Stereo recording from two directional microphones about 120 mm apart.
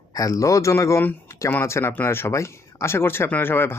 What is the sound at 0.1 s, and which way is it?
Speech, 30° left (ahead or behind).